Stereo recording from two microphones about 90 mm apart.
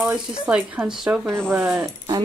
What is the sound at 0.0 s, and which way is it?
Speech, 10° right (ahead or behind).